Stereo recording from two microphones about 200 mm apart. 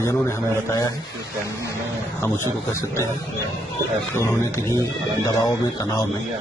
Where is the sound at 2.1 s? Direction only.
10° left (ahead or behind).